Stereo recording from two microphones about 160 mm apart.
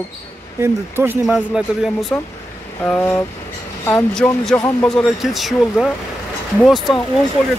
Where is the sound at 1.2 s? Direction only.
5° right (ahead or behind).